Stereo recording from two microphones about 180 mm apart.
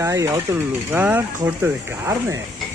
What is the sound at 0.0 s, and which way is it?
Speech, 15° right (ahead or behind).